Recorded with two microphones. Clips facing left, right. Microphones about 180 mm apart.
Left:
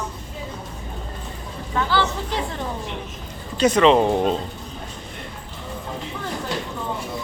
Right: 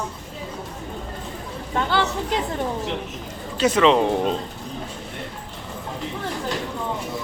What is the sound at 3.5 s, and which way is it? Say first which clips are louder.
Speech: left 2 dB; centre (ahead or behind).